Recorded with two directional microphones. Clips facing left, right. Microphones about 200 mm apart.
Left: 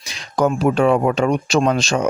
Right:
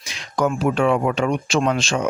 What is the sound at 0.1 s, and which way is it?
Speech, 35° left (ahead or behind).